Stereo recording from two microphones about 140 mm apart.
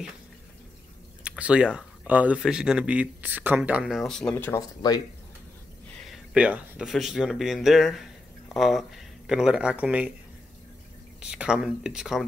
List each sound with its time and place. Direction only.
1.2 s speech: 10° right (ahead or behind)
4.3 s speech: 15° left (ahead or behind)
4.6 s speech: 30° left (ahead or behind)
6.3 s speech: 10° right (ahead or behind)
11.1 s speech: 5° right (ahead or behind)